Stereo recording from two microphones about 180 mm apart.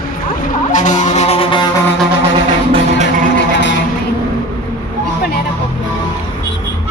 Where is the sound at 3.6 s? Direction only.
80° left.